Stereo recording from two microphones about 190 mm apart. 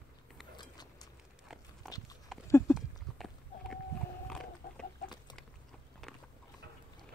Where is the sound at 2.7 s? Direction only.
Centre (ahead or behind).